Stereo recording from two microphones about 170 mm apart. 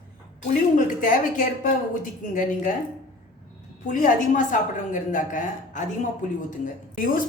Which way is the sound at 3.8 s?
50° left (ahead or behind).